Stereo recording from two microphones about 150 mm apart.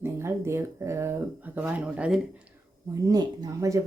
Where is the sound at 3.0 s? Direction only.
25° right (ahead or behind).